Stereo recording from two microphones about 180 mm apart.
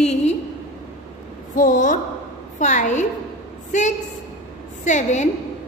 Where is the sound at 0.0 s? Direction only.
40° left (ahead or behind).